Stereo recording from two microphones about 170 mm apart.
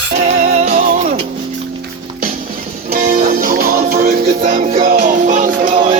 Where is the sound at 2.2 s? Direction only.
55° right (ahead or behind).